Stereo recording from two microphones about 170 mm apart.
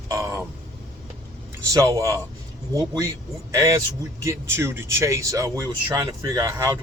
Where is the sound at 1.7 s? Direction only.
20° right (ahead or behind).